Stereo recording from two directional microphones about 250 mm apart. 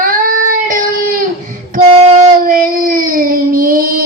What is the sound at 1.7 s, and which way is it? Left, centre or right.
Child singing, right.